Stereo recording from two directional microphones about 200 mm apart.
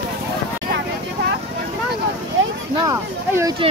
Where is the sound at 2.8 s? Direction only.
15° right (ahead or behind).